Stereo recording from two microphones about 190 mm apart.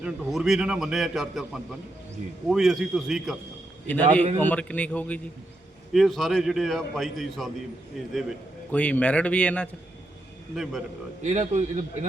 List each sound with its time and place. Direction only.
0.0 s a man's voice: centre (ahead or behind)
11.3 s a man's voice: 40° right (ahead or behind)